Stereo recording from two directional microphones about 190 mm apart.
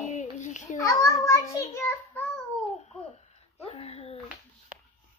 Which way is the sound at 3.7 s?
30° left (ahead or behind).